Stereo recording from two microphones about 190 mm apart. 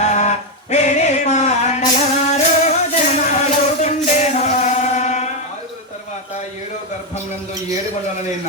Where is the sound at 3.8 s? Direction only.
40° left (ahead or behind).